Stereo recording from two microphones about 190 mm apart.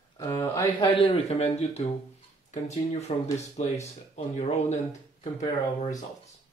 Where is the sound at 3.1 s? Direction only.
35° left (ahead or behind).